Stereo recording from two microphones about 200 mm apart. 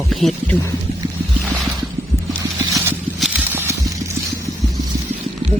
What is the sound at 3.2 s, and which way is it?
Clip-clop, 5° right (ahead or behind).